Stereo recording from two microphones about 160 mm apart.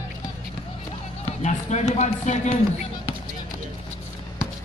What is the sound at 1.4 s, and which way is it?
Speech, 45° left (ahead or behind).